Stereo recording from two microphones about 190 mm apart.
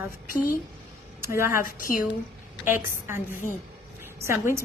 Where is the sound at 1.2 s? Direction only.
15° right (ahead or behind).